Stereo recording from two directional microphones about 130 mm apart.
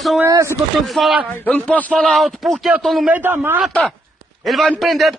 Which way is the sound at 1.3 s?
10° left (ahead or behind).